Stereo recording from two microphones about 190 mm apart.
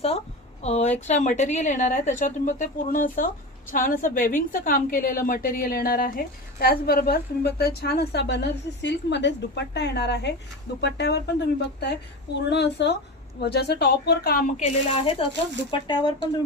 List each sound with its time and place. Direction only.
0.6 s a woman's voice: 35° left (ahead or behind)
15.7 s speech: 25° left (ahead or behind)